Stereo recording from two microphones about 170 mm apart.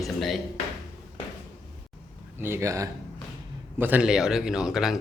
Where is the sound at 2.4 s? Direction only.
15° right (ahead or behind).